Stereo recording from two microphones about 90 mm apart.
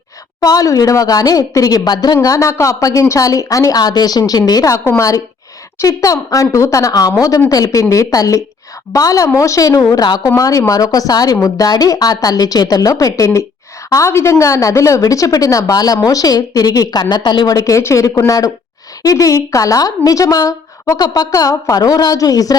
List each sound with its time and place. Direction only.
0.3 s a woman's voice: 40° left (ahead or behind)
2.2 s a woman's voice: 35° left (ahead or behind)